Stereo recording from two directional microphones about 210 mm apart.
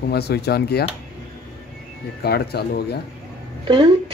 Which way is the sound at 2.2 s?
50° left (ahead or behind).